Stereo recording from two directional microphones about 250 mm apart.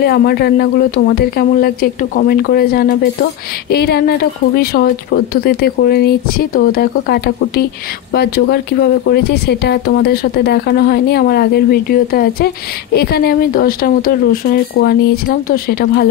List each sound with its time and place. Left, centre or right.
0.0 s a woman's voice: left